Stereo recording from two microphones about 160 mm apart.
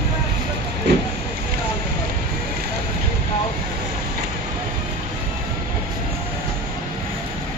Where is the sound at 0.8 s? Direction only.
90° right.